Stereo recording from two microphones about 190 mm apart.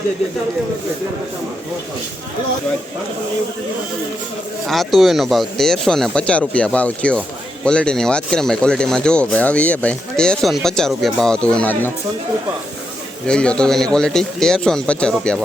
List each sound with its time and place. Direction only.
4.6 s speech: centre (ahead or behind)
13.2 s speech: 5° left (ahead or behind)